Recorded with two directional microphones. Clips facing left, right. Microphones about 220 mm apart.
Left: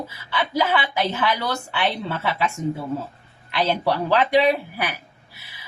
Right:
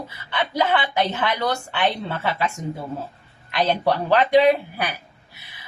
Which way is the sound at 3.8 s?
5° left (ahead or behind).